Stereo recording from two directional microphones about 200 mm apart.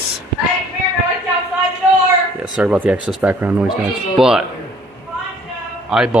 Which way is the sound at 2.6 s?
5° right (ahead or behind).